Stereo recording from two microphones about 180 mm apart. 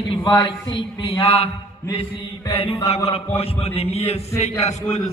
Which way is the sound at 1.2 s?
35° left (ahead or behind).